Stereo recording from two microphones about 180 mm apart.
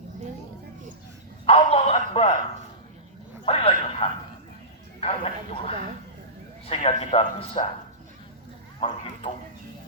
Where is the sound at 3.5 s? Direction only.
30° left (ahead or behind).